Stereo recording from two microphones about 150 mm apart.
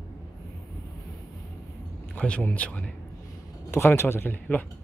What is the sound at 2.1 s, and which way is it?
Speech, 10° left (ahead or behind).